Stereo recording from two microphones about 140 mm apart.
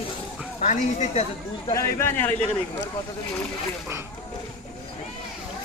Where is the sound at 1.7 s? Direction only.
15° left (ahead or behind).